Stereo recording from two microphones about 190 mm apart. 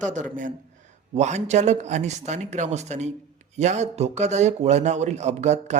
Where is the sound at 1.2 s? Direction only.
35° right (ahead or behind).